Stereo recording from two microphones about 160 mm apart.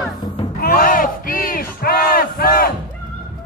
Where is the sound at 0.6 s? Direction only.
65° left (ahead or behind).